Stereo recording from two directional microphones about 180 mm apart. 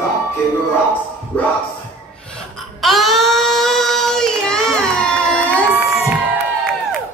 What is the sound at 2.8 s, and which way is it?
Child singing, centre (ahead or behind).